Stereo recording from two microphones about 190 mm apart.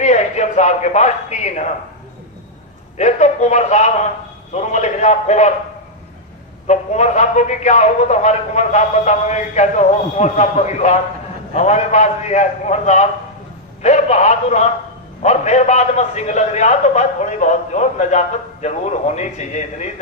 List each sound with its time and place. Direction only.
0.0 s speech: 35° left (ahead or behind)
3.0 s a man's voice: 40° left (ahead or behind)
6.7 s a man's voice: 35° left (ahead or behind)